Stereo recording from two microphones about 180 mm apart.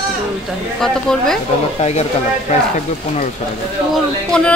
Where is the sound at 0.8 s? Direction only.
5° left (ahead or behind).